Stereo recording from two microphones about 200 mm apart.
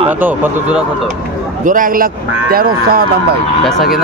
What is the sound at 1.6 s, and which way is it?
Speech, 45° right (ahead or behind).